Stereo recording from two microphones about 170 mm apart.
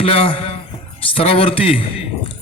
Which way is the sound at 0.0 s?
35° left (ahead or behind).